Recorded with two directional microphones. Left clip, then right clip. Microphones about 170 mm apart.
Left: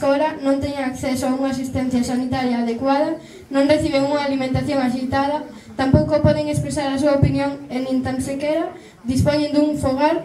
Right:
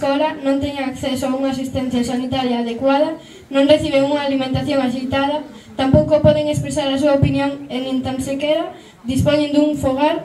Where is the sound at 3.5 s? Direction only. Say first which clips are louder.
Right 3 dB; 15° right (ahead or behind).